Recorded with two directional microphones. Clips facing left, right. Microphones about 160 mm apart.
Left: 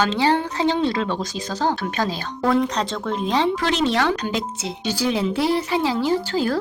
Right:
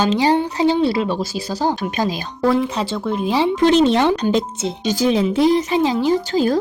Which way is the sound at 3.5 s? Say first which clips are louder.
Right 7 dB; 20° right (ahead or behind).